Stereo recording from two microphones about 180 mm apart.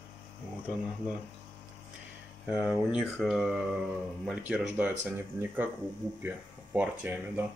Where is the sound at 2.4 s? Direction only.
5° right (ahead or behind).